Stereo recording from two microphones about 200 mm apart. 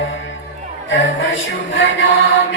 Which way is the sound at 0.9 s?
65° left (ahead or behind).